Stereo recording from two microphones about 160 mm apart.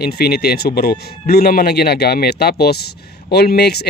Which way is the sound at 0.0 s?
80° left.